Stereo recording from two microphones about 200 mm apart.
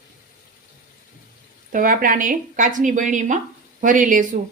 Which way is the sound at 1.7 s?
45° right (ahead or behind).